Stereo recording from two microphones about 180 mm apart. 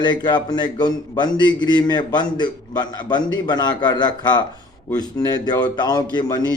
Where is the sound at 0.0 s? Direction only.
25° left (ahead or behind).